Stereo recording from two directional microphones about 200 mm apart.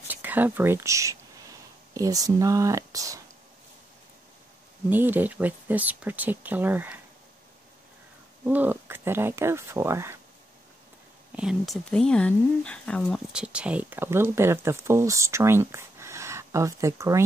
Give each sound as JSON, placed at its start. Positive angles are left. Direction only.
{"t": 0.1, "sound": "speech", "side_deg": -10}
{"t": 4.8, "sound": "speech", "side_deg": -10}
{"t": 8.5, "sound": "speech", "side_deg": -10}
{"t": 11.3, "sound": "speech", "side_deg": 0}